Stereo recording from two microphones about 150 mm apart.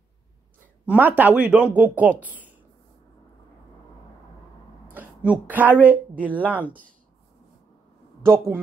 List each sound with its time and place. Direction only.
0.8 s a woman's voice: 10° right (ahead or behind)
4.9 s a woman's voice: 10° right (ahead or behind)
8.2 s speech: 15° right (ahead or behind)